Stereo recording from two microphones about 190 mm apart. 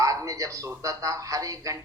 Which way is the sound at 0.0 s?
15° right (ahead or behind).